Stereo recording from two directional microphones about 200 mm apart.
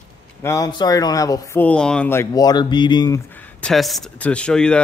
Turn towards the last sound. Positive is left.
turn(degrees=5)  # may be behind; listen again after turning